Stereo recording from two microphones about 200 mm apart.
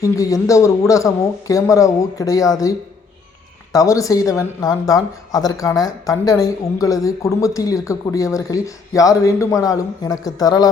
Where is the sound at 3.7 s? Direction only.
15° left (ahead or behind).